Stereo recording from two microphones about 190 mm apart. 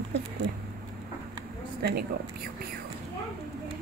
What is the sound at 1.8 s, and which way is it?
Speech, 55° right (ahead or behind).